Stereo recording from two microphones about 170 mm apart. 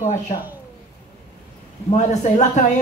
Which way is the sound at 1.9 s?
45° left (ahead or behind).